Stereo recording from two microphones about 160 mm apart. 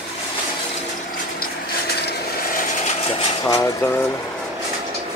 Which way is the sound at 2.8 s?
40° left (ahead or behind).